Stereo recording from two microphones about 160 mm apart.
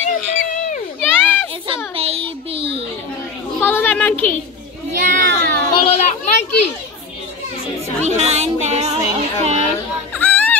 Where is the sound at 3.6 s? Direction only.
15° left (ahead or behind).